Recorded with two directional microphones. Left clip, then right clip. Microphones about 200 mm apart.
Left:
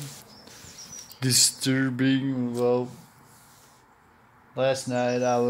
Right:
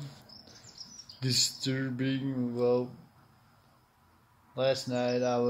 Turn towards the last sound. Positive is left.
turn(degrees=10)  # may be behind; listen again after turning